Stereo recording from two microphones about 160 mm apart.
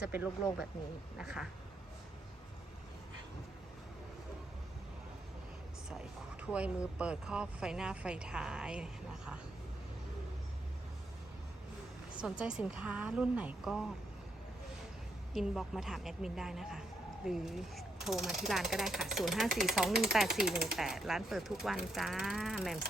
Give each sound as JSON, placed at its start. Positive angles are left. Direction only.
{"t": 0.0, "sound": "a woman's voice", "side_deg": -10}
{"t": 6.5, "sound": "speech", "side_deg": -5}
{"t": 12.2, "sound": "a woman's voice", "side_deg": -5}
{"t": 15.3, "sound": "speech", "side_deg": 0}